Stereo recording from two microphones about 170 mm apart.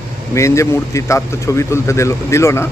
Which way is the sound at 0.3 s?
15° left (ahead or behind).